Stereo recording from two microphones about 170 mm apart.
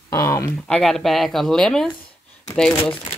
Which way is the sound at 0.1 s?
15° left (ahead or behind).